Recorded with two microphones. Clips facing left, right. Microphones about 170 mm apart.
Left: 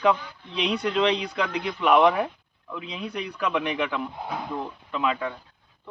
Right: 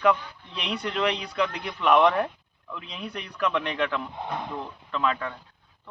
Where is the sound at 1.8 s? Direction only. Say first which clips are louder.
Left 1 dB; 10° left (ahead or behind).